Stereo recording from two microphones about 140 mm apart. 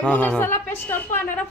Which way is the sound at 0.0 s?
10° left (ahead or behind).